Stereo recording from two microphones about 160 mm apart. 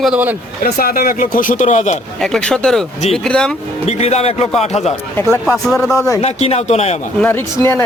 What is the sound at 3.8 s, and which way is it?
Speech, 40° left (ahead or behind).